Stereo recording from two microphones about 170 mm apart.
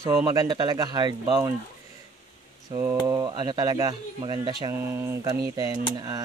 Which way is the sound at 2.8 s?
15° right (ahead or behind).